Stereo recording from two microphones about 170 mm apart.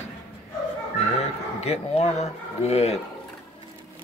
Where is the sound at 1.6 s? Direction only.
40° left (ahead or behind).